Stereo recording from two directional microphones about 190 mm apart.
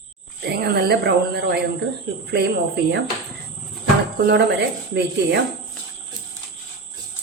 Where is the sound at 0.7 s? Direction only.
55° right (ahead or behind).